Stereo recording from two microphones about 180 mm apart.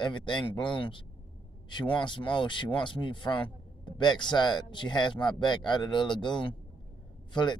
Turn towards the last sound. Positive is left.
turn(degrees=25)  # may be behind; listen again after turning